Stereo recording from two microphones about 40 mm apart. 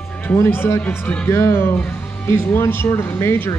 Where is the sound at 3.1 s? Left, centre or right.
Left.